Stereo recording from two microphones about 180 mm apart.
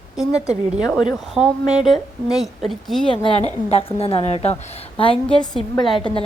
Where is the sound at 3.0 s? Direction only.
30° left (ahead or behind).